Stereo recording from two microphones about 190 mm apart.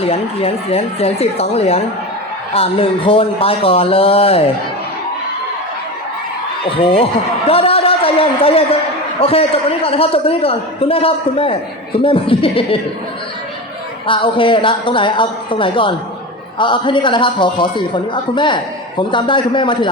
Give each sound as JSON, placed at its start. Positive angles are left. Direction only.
{"t": 0.0, "sound": "a man's voice", "side_deg": 30}
{"t": 6.7, "sound": "a man's voice", "side_deg": 30}
{"t": 7.4, "sound": "a sound", "side_deg": 30}
{"t": 9.2, "sound": "a man's voice", "side_deg": 30}
{"t": 14.1, "sound": "a man's voice", "side_deg": 25}